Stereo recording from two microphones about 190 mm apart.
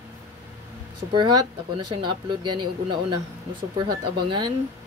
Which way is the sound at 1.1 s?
25° right (ahead or behind).